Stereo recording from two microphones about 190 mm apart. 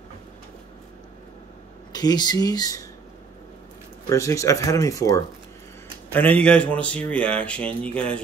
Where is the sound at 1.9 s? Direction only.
20° left (ahead or behind).